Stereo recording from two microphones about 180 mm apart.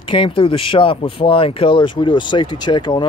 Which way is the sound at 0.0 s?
30° left (ahead or behind).